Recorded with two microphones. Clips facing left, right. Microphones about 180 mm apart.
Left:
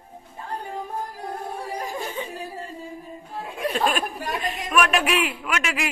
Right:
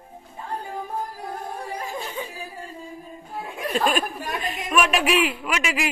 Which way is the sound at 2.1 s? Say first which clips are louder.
Left 1 dB; centre (ahead or behind).